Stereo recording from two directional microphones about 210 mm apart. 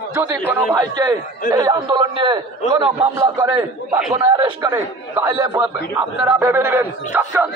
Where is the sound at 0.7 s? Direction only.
20° right (ahead or behind).